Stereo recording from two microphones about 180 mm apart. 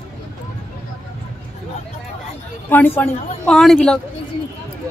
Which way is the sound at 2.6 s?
10° left (ahead or behind).